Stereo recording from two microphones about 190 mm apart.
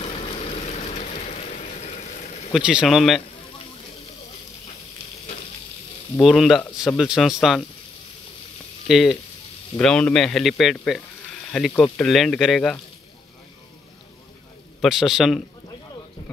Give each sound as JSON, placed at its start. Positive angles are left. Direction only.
{"t": 0.0, "sound": "vehicle", "side_deg": 35}
{"t": 2.5, "sound": "speech", "side_deg": -5}
{"t": 6.2, "sound": "speech", "side_deg": 0}
{"t": 8.8, "sound": "speech", "side_deg": 0}
{"t": 14.8, "sound": "speech", "side_deg": -5}